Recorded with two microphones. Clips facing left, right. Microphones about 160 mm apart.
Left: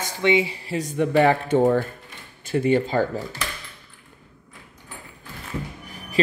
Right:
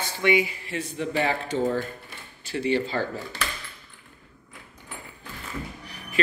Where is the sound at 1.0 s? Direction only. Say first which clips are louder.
Left 8 dB; 55° left (ahead or behind).